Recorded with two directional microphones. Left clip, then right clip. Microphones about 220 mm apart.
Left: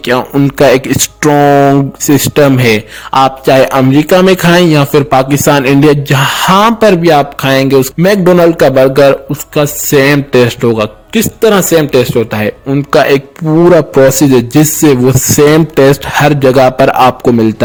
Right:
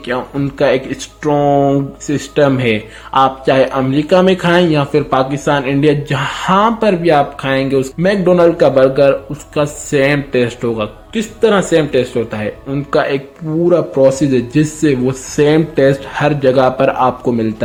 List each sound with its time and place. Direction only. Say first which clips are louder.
0.0 s a man's voice: left 9 dB; 45° left (ahead or behind)
1.5 s speech: left 5 dB; 35° left (ahead or behind)
2.0 s a man's voice: left 6 dB; 50° left (ahead or behind)